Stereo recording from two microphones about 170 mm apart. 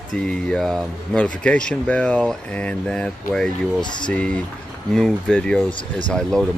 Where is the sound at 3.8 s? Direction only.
25° left (ahead or behind).